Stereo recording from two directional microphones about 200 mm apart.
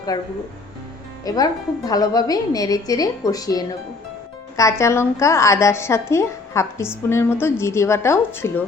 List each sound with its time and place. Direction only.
0.1 s a woman's voice: 20° left (ahead or behind)